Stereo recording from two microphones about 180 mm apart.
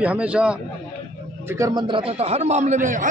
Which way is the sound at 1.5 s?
20° right (ahead or behind).